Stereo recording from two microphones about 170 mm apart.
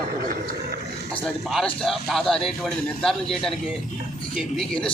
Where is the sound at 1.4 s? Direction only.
Centre (ahead or behind).